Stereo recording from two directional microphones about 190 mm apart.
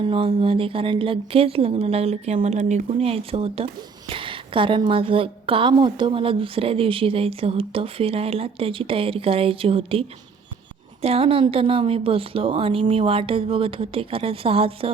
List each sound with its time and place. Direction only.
0.0 s a woman's voice: 25° right (ahead or behind)